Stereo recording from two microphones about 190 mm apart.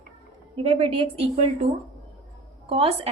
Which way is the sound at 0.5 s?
30° right (ahead or behind).